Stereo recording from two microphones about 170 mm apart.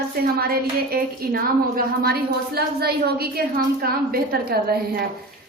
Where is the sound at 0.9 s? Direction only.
65° right (ahead or behind).